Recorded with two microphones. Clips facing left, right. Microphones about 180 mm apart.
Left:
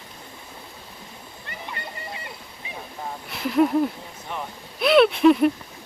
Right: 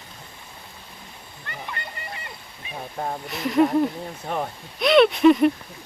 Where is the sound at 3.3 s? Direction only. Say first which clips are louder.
Even; centre (ahead or behind).